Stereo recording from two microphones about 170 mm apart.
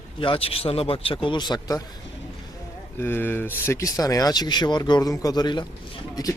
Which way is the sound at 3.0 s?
15° left (ahead or behind).